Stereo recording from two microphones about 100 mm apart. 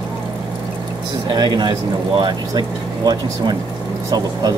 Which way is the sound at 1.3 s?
45° right (ahead or behind).